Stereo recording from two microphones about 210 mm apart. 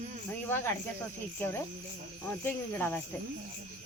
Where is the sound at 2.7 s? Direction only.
10° left (ahead or behind).